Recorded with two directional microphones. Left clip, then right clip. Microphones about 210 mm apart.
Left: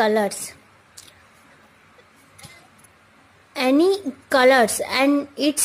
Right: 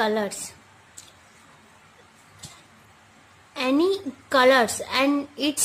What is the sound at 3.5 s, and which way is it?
Speech, 20° left (ahead or behind).